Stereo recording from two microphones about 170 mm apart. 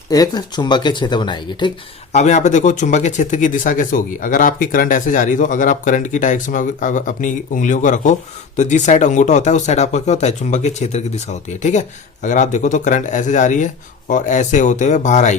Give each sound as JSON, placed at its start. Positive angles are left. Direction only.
{"t": 0.1, "sound": "speech", "side_deg": 25}
{"t": 2.1, "sound": "speech", "side_deg": 45}